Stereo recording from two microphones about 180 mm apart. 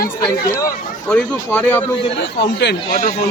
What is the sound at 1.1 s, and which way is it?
Speech, 5° left (ahead or behind).